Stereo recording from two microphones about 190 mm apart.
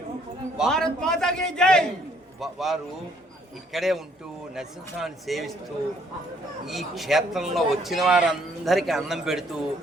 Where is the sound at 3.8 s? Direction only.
Centre (ahead or behind).